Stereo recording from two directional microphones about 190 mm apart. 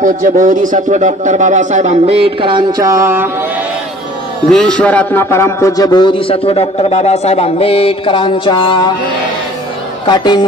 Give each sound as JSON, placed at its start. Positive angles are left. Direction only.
{"t": 0.0, "sound": "speech", "side_deg": -45}
{"t": 4.5, "sound": "a man's voice", "side_deg": 5}
{"t": 10.0, "sound": "a man's voice", "side_deg": 25}